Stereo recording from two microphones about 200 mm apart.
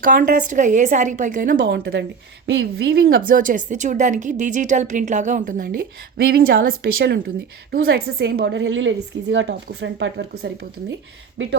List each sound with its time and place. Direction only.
0.0 s speech: 45° right (ahead or behind)
2.5 s a woman's voice: 65° right (ahead or behind)